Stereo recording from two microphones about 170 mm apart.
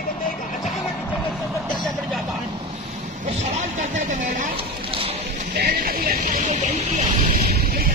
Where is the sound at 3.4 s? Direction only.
45° right (ahead or behind).